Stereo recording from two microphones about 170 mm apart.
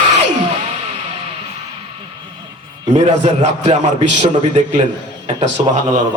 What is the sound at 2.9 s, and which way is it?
A man's voice, 45° right (ahead or behind).